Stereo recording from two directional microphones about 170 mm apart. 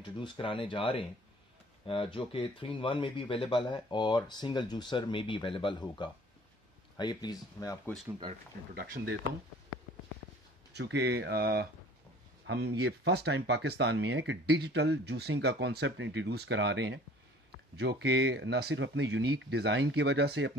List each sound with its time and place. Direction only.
0.0 s speech: 30° left (ahead or behind)
10.7 s speech: 85° right